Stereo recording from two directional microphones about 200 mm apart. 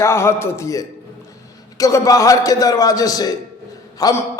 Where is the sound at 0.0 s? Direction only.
15° left (ahead or behind).